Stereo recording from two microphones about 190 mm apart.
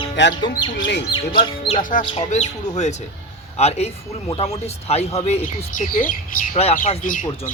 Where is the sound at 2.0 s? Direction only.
35° left (ahead or behind).